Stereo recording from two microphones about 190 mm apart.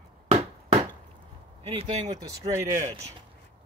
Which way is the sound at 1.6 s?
35° right (ahead or behind).